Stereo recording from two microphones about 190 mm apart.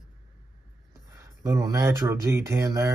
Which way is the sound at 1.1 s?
15° right (ahead or behind).